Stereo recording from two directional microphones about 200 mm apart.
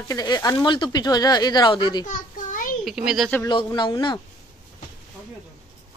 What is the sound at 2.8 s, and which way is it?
Speech, centre (ahead or behind).